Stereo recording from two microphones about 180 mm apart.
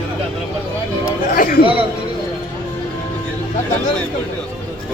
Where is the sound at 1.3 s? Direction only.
50° left (ahead or behind).